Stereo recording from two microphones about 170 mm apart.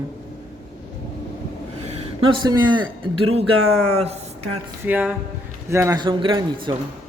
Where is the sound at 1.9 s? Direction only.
25° right (ahead or behind).